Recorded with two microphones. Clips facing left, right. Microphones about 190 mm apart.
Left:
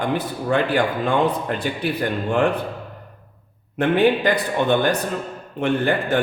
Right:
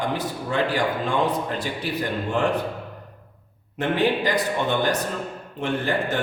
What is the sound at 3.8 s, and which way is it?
A man's voice, 55° left (ahead or behind).